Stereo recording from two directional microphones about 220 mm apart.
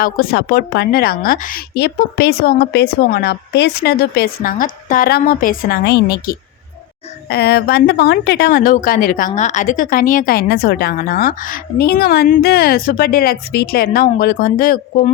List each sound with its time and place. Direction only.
0.0 s a woman's voice: 40° left (ahead or behind)